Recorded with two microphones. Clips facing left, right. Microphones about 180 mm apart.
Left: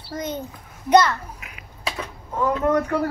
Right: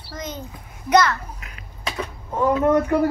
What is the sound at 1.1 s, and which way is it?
Babbling, 5° left (ahead or behind).